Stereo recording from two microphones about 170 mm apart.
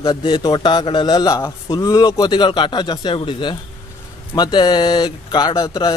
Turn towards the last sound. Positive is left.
turn(degrees=25)  # may be behind; listen again after turning